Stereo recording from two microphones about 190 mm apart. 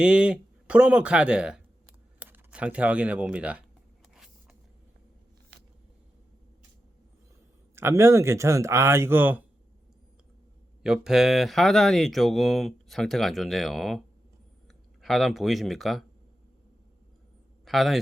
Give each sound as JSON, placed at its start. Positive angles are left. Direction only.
{"t": 0.0, "sound": "speech", "side_deg": -5}
{"t": 4.1, "sound": "a sound", "side_deg": 0}
{"t": 7.8, "sound": "speech", "side_deg": -15}
{"t": 10.8, "sound": "speech", "side_deg": -5}
{"t": 15.0, "sound": "speech", "side_deg": 0}
{"t": 17.7, "sound": "speech", "side_deg": 0}